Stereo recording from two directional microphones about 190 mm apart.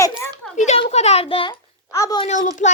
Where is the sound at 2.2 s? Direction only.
40° left (ahead or behind).